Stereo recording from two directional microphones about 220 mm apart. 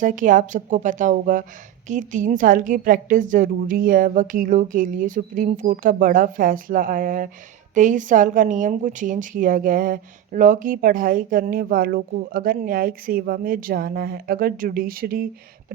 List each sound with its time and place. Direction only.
0.0 s a woman's voice: 35° right (ahead or behind)